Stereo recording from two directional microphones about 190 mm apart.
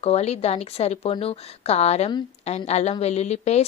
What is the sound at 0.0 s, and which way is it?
Speech, 35° left (ahead or behind).